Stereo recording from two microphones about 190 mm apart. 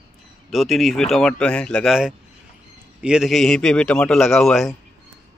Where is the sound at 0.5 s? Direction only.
Centre (ahead or behind).